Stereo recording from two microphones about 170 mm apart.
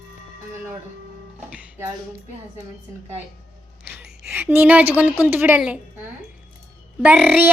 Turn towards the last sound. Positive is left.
turn(degrees=-5)  # may be behind; listen again after turning